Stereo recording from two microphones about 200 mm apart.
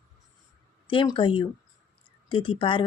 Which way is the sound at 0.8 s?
25° left (ahead or behind).